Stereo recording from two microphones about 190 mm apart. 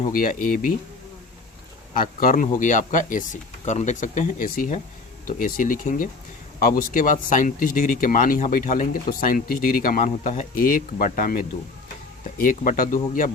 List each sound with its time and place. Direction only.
0.0 s speech: 45° left (ahead or behind)
1.9 s speech: 45° left (ahead or behind)